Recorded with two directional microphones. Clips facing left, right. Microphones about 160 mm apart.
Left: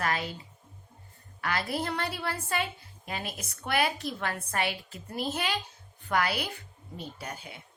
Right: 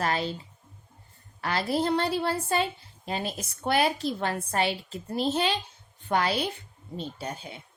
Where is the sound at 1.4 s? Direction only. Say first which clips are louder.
Right 5 dB; 30° right (ahead or behind).